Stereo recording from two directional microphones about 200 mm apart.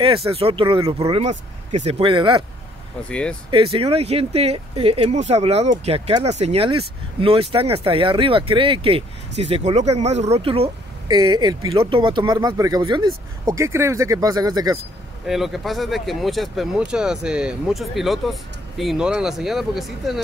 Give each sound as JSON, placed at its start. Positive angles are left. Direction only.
{"t": 0.0, "sound": "speech", "side_deg": -25}
{"t": 3.1, "sound": "speech", "side_deg": 5}
{"t": 3.4, "sound": "speech", "side_deg": -25}
{"t": 15.2, "sound": "speech", "side_deg": 0}